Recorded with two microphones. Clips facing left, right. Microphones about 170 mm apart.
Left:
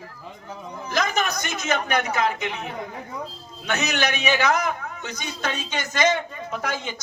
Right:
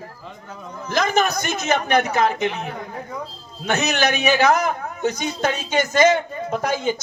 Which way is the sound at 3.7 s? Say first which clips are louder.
Right 4 dB; 45° right (ahead or behind).